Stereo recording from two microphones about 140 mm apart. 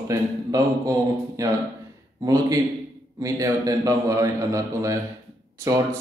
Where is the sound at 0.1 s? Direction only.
25° right (ahead or behind).